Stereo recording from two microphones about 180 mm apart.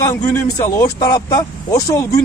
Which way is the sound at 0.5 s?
20° left (ahead or behind).